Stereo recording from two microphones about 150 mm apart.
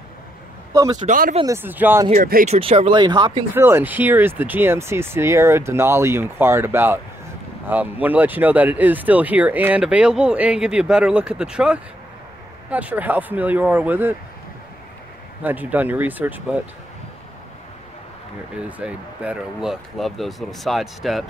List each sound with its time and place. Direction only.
1.0 s speech: 70° right (ahead or behind)
1.4 s speech: 15° right (ahead or behind)
2.1 s speech: 65° right (ahead or behind)
2.5 s speech: 40° right (ahead or behind)
3.5 s speech: 15° right (ahead or behind)
15.4 s speech: 10° right (ahead or behind)
18.6 s speech: 10° right (ahead or behind)